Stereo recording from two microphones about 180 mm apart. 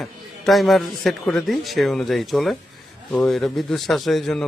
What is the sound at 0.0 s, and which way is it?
A man's voice, centre (ahead or behind).